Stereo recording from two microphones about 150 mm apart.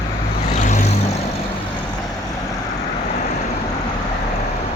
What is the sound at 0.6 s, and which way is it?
Vehicle, 55° left (ahead or behind).